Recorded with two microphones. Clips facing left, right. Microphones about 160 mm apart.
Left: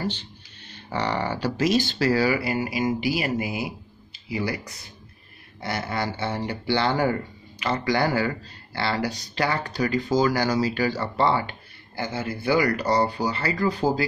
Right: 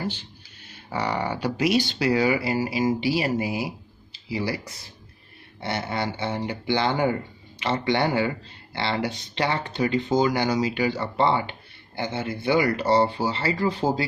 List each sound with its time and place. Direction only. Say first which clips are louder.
0.0 s speech: left 1 dB; 10° right (ahead or behind); by 14.0 s 25° right (ahead or behind)